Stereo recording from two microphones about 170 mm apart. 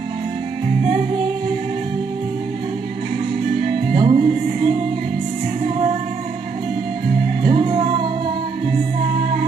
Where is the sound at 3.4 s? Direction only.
60° right (ahead or behind).